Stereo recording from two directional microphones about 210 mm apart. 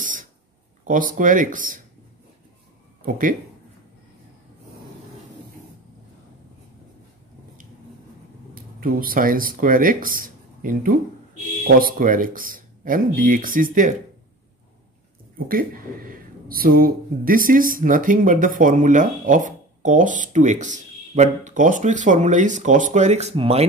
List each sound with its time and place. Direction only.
0.8 s speech: 40° right (ahead or behind)
3.1 s speech: 40° right (ahead or behind)
8.7 s speech: 40° right (ahead or behind)
15.3 s speech: 45° right (ahead or behind); by 23.6 s 30° right (ahead or behind)